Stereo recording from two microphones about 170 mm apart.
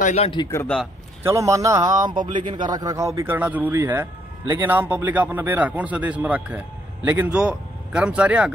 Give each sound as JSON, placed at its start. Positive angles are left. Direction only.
{"t": 0.0, "sound": "a man's voice", "side_deg": 40}
{"t": 0.3, "sound": "a man's voice", "side_deg": 25}
{"t": 0.6, "sound": "a man's voice", "side_deg": 5}
{"t": 1.2, "sound": "a man's voice", "side_deg": -20}